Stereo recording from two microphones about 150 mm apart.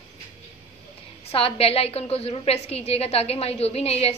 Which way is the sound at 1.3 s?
40° left (ahead or behind).